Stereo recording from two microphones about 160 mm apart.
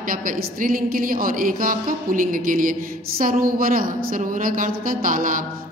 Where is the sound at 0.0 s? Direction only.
60° right (ahead or behind).